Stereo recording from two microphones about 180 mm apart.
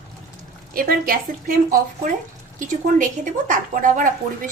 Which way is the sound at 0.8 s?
55° right (ahead or behind).